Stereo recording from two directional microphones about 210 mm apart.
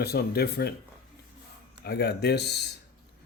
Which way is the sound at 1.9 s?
50° left (ahead or behind).